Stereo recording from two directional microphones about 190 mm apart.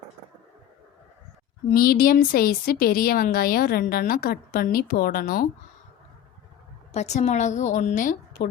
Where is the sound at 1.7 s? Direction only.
50° left (ahead or behind).